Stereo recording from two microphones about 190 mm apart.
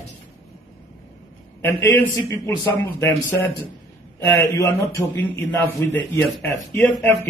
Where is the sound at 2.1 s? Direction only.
20° left (ahead or behind).